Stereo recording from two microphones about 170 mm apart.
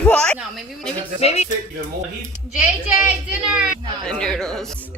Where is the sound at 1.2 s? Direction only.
40° left (ahead or behind).